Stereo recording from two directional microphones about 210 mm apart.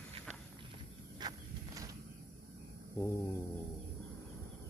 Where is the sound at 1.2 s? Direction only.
20° right (ahead or behind).